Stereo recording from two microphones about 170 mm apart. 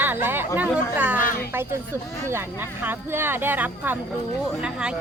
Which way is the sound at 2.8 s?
15° right (ahead or behind).